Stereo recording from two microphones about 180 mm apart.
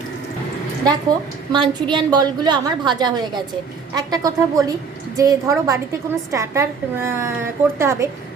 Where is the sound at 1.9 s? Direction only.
25° right (ahead or behind).